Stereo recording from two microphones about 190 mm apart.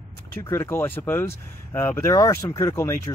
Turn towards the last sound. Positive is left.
turn(degrees=15)  # may be behind; listen again after turning